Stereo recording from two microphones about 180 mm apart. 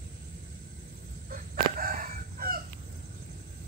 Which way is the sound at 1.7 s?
50° right (ahead or behind).